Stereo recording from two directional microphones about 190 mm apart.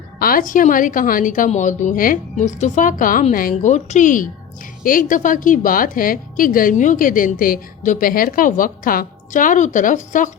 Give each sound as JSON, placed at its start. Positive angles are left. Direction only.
{"t": 0.2, "sound": "a woman's voice", "side_deg": 50}